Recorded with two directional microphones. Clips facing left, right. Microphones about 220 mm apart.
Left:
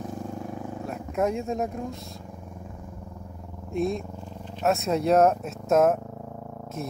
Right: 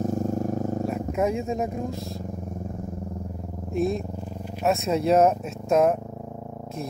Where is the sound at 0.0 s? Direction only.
45° right (ahead or behind).